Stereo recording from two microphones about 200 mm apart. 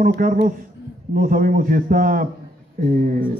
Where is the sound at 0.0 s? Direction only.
45° right (ahead or behind).